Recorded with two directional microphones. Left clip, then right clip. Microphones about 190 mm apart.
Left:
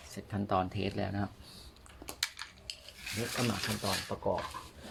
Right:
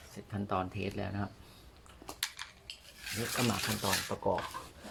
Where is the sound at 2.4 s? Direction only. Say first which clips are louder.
Even; 10° right (ahead or behind).